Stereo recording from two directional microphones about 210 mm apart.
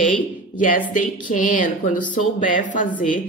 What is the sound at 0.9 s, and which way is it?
A woman's voice, 40° left (ahead or behind).